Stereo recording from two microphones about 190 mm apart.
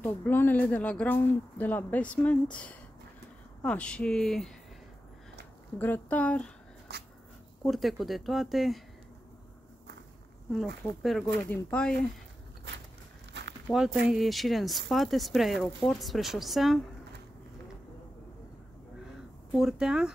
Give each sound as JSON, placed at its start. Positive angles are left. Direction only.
{"t": 0.0, "sound": "speech", "side_deg": 10}
{"t": 5.8, "sound": "speech", "side_deg": 10}
{"t": 6.9, "sound": "dog", "side_deg": -60}
{"t": 7.6, "sound": "speech", "side_deg": 0}
{"t": 11.0, "sound": "speech", "side_deg": 0}
{"t": 13.3, "sound": "a sound", "side_deg": -65}
{"t": 14.0, "sound": "speech", "side_deg": 0}
{"t": 19.5, "sound": "speech", "side_deg": -5}